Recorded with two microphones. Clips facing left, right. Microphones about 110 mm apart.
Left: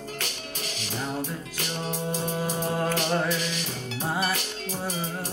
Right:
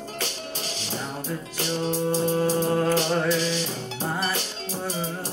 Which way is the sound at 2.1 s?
30° right (ahead or behind).